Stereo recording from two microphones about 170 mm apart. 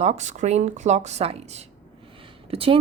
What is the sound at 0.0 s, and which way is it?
Speech, 40° right (ahead or behind).